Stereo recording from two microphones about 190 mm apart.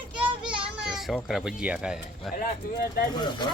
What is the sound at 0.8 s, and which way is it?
Speech, centre (ahead or behind).